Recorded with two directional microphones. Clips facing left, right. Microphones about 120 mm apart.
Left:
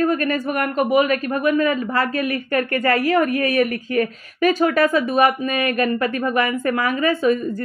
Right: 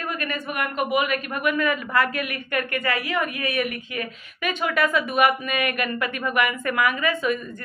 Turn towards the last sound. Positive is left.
turn(degrees=35)  # may be behind; listen again after turning